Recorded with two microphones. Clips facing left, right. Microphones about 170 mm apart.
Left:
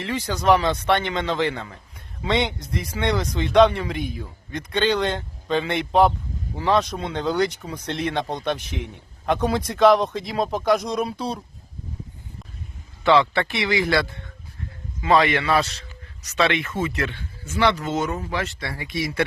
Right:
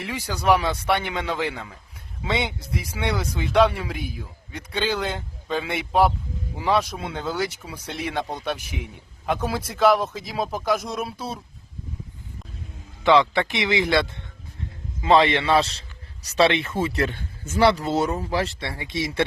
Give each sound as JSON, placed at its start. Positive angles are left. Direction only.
{"t": 0.0, "sound": "speech", "side_deg": -10}
{"t": 13.1, "sound": "speech", "side_deg": -15}